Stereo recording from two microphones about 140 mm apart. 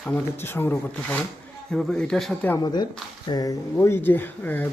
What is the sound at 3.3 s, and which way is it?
Speech, 25° left (ahead or behind).